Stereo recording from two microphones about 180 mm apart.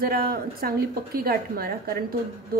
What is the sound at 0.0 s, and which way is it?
A woman's voice, 55° right (ahead or behind).